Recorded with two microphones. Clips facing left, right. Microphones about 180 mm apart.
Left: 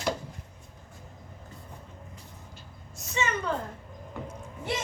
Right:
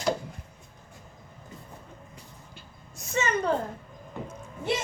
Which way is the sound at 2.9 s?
50° right (ahead or behind).